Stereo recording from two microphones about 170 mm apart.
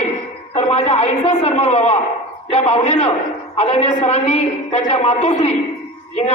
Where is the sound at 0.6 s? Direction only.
40° left (ahead or behind).